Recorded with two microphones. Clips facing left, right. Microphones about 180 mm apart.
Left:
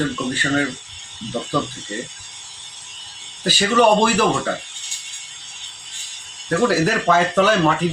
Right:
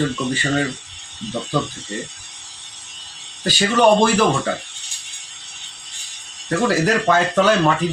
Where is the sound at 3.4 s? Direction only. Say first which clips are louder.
Even; centre (ahead or behind).